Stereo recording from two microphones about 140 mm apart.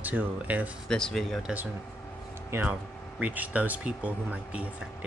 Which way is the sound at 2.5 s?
15° right (ahead or behind).